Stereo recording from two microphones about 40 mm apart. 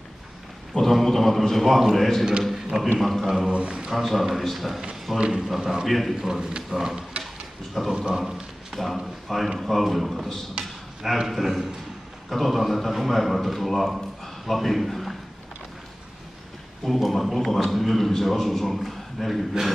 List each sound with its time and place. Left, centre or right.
0.7 s a man's voice: centre
3.4 s a man's voice: right
3.9 s a man's voice: centre
5.9 s a man's voice: centre
6.1 s a man's voice: centre
8.2 s a sound: centre
8.7 s a man's voice: centre
16.8 s a man's voice: centre